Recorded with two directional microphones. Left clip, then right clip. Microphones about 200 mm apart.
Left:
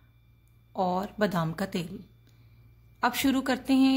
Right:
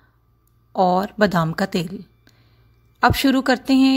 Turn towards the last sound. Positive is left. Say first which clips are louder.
# right 8 dB
turn(degrees=-30)  # may be behind; listen again after turning